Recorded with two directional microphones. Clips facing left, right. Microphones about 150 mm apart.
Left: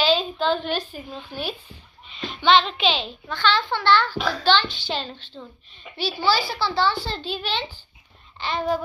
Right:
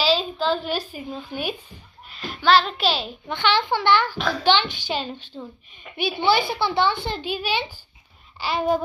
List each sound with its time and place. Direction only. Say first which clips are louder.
0.0 s a woman's voice: left 1 dB; 5° right (ahead or behind)
3.3 s a child's voice: right 1 dB; 20° right (ahead or behind)